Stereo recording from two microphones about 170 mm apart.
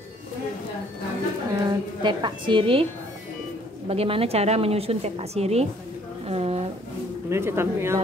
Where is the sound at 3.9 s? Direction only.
35° right (ahead or behind).